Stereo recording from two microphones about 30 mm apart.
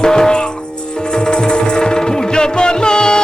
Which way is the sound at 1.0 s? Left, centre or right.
Left.